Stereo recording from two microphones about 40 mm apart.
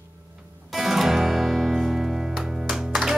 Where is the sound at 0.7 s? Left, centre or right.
Centre.